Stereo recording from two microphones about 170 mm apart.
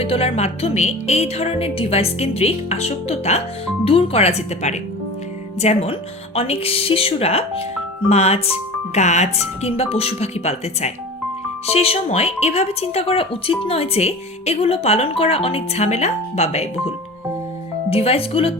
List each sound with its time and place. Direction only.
0.0 s speech: 35° left (ahead or behind)
17.9 s speech: 35° left (ahead or behind)